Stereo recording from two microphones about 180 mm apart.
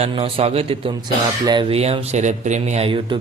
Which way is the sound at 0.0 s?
35° right (ahead or behind).